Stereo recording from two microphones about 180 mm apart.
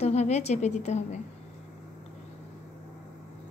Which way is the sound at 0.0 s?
40° left (ahead or behind).